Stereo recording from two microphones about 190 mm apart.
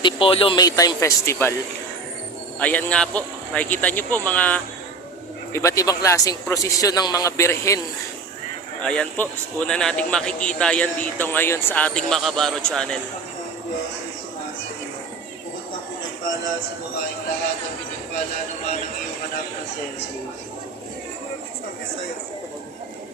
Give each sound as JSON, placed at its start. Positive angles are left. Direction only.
{"t": 0.0, "sound": "a man's voice", "side_deg": 30}
{"t": 2.6, "sound": "speech", "side_deg": 10}
{"t": 8.8, "sound": "a man's voice", "side_deg": 5}